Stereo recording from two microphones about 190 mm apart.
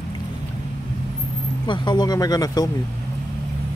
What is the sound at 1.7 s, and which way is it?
Speech, 25° left (ahead or behind).